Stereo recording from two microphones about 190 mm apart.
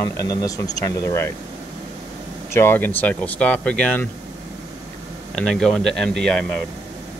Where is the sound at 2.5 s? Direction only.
10° left (ahead or behind).